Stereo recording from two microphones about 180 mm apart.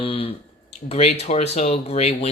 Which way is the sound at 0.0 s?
30° left (ahead or behind).